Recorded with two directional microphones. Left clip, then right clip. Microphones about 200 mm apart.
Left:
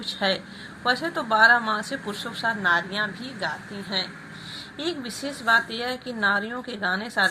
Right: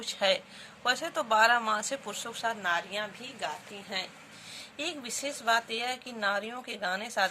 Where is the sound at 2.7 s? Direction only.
50° right (ahead or behind).